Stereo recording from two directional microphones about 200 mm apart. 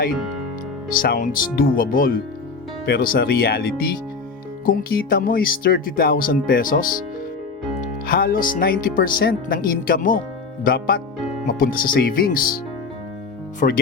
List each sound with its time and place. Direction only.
0.9 s speech: 45° left (ahead or behind)
13.6 s speech: 45° left (ahead or behind)